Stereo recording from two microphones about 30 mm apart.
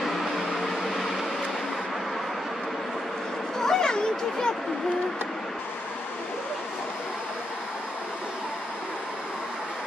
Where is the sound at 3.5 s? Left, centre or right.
Centre.